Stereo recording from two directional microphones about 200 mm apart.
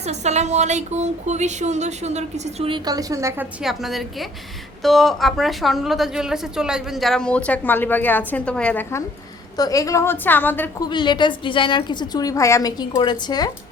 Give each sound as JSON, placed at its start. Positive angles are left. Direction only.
{"t": 0.0, "sound": "speech", "side_deg": -35}
{"t": 3.6, "sound": "a woman's voice", "side_deg": 0}
{"t": 10.8, "sound": "a woman's voice", "side_deg": 20}